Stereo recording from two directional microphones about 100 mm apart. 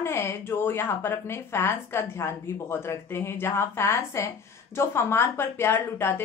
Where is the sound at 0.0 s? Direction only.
25° left (ahead or behind).